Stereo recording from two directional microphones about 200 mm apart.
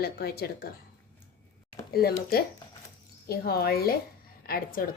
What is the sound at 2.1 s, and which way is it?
A woman's voice, 50° left (ahead or behind).